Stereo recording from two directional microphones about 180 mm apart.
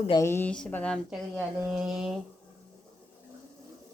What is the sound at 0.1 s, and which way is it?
A woman's voice, 15° left (ahead or behind).